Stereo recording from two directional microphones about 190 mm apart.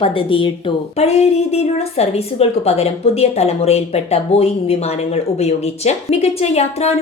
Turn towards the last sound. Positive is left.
turn(degrees=35)  # may be behind; listen again after turning